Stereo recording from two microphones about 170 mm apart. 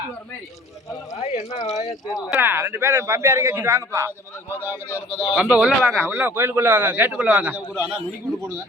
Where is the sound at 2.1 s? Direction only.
10° right (ahead or behind).